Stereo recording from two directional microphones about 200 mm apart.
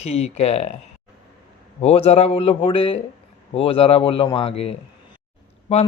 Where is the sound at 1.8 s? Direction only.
30° left (ahead or behind).